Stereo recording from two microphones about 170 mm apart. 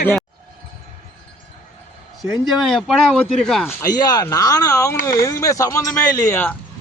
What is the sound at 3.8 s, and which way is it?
Speech, 25° left (ahead or behind).